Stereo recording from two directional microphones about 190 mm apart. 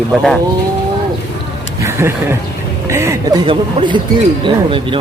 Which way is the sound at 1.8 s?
15° right (ahead or behind).